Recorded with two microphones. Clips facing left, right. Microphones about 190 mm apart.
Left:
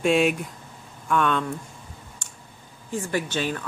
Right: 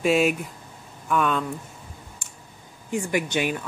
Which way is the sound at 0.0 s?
Centre (ahead or behind).